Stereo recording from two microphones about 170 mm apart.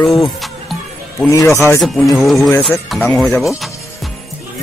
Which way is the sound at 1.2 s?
20° left (ahead or behind).